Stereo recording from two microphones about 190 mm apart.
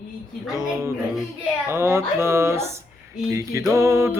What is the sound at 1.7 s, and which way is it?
Music, 15° right (ahead or behind).